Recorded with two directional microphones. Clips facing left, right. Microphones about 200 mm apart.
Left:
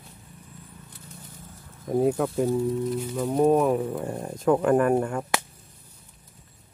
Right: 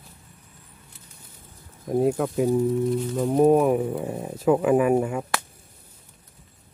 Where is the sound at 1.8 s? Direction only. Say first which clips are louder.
Right 1 dB; 5° right (ahead or behind).